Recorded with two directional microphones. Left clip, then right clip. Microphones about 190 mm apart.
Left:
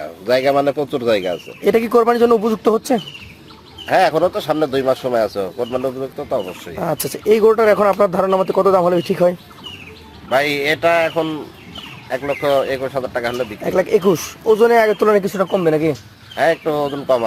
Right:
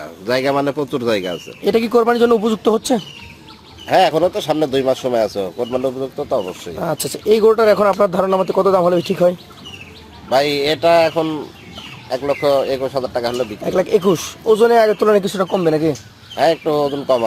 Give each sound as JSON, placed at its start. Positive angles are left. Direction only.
{"t": 0.0, "sound": "a man's voice", "side_deg": -25}
{"t": 1.6, "sound": "speech", "side_deg": 15}
{"t": 3.8, "sound": "speech", "side_deg": -10}
{"t": 6.7, "sound": "speech", "side_deg": 15}
{"t": 10.2, "sound": "speech", "side_deg": -15}
{"t": 13.6, "sound": "speech", "side_deg": 15}
{"t": 16.3, "sound": "speech", "side_deg": -10}